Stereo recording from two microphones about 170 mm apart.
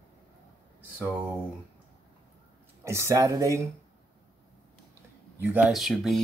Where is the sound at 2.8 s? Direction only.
15° right (ahead or behind).